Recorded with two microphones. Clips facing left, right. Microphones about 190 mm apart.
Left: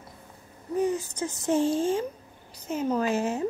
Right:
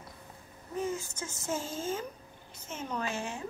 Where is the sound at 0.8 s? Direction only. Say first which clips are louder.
Left 8 dB; 35° left (ahead or behind).